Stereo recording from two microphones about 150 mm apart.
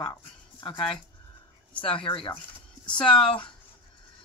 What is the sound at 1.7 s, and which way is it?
Speech, 10° left (ahead or behind).